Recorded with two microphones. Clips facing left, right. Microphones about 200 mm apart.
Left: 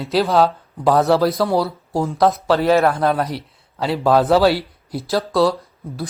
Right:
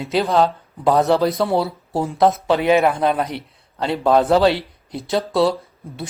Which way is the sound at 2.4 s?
20° right (ahead or behind).